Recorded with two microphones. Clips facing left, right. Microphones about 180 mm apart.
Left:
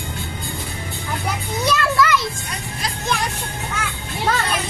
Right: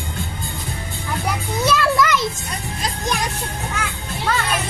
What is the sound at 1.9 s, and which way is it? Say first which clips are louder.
Children playing: even; 15° right (ahead or behind).